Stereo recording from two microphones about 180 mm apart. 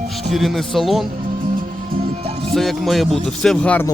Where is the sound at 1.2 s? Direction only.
50° right (ahead or behind).